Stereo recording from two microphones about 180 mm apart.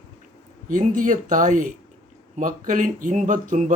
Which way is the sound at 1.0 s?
45° right (ahead or behind).